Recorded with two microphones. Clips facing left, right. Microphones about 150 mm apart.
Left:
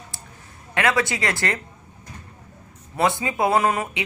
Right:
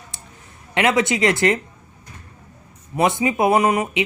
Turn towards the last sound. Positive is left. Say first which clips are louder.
# right 3 dB
turn(degrees=-15)  # may be behind; listen again after turning